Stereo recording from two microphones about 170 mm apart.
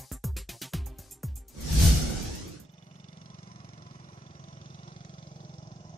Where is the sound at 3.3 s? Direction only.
30° left (ahead or behind).